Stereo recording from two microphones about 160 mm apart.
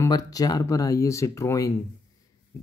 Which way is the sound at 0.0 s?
20° left (ahead or behind).